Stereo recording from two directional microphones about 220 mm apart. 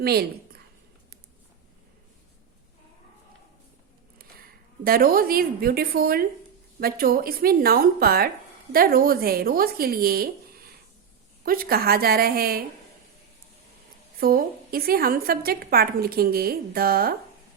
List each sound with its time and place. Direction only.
0.0 s a woman's voice: 45° right (ahead or behind)
4.8 s a woman's voice: 40° right (ahead or behind)
14.2 s a woman's voice: 40° right (ahead or behind)